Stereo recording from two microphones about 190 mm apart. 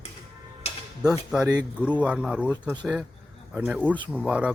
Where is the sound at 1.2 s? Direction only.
5° right (ahead or behind).